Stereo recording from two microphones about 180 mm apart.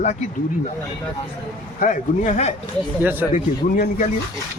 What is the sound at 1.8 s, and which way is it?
Speech, 45° left (ahead or behind).